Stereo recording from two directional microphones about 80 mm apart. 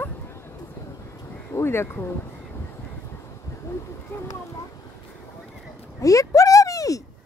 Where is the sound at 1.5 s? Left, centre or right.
Left.